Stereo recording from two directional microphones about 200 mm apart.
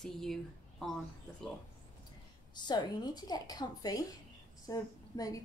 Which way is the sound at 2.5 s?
20° left (ahead or behind).